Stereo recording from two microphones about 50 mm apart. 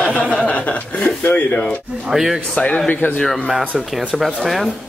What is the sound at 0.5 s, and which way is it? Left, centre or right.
A man's voice, left.